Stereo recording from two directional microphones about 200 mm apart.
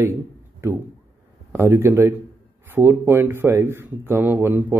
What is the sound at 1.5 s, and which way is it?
Speech, 10° right (ahead or behind).